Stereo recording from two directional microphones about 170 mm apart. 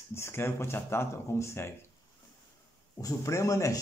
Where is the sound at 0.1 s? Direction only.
15° left (ahead or behind).